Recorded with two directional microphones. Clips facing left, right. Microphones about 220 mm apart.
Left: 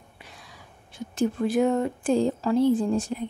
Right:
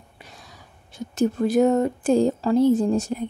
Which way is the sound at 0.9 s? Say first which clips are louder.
Right 3 dB; 40° right (ahead or behind).